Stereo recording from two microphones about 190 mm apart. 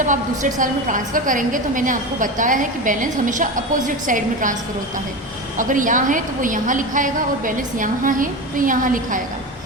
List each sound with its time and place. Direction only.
0.0 s a woman's voice: 45° right (ahead or behind)
5.5 s a woman's voice: 45° right (ahead or behind)